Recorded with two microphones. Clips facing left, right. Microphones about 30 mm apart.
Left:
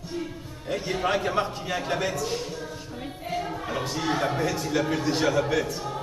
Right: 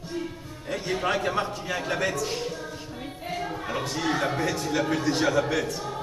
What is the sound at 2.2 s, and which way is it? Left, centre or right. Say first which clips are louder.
Speech: even; centre.